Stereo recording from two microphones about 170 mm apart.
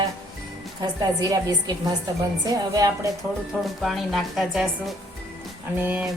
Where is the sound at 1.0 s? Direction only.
20° right (ahead or behind).